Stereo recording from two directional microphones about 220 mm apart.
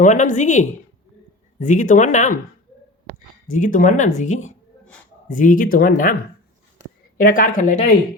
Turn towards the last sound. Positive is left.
turn(degrees=35)  # may be behind; listen again after turning